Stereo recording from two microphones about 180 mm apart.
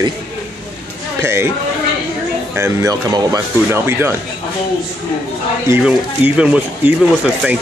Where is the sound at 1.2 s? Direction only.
15° right (ahead or behind).